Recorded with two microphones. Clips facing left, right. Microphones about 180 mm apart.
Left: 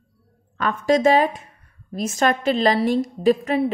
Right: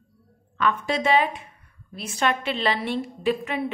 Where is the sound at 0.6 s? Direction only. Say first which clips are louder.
Left 5 dB; 40° left (ahead or behind).